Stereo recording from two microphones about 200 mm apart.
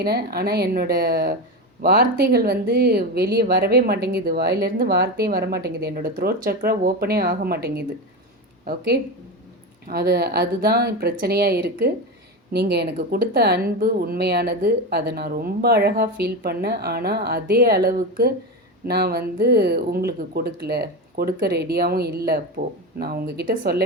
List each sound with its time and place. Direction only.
0.0 s speech: 50° right (ahead or behind)